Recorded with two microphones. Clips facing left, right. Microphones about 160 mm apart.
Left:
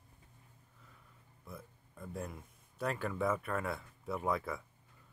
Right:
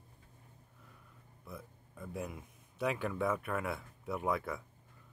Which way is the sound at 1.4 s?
Centre (ahead or behind).